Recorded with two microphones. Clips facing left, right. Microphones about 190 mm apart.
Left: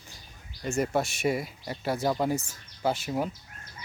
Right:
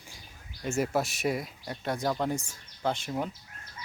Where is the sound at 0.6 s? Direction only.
Centre (ahead or behind).